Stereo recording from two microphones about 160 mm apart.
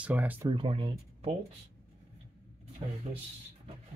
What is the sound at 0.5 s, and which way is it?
Speech, 30° right (ahead or behind).